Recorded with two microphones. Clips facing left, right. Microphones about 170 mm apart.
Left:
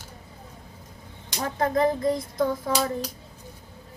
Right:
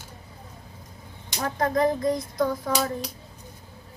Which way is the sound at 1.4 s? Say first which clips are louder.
Even; 25° left (ahead or behind).